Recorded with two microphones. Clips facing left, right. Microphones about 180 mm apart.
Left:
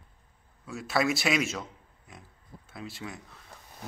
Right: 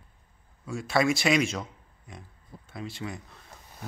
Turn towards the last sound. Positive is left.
turn(degrees=0)  # may be behind; listen again after turning